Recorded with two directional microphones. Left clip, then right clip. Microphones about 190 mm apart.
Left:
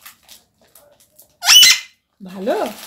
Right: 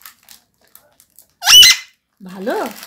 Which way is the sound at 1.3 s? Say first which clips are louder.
Right 3 dB; 15° right (ahead or behind).